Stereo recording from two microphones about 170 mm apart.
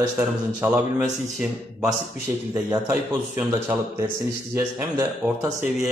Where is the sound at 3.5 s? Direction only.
15° right (ahead or behind).